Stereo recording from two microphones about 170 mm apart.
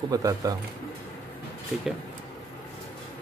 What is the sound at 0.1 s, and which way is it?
Speech, 20° right (ahead or behind).